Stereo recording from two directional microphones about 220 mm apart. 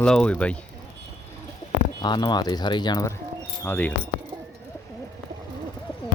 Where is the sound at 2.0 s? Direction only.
20° left (ahead or behind).